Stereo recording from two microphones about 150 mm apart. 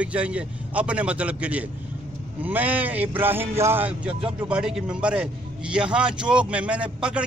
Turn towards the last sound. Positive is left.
turn(degrees=-10)  # may be behind; listen again after turning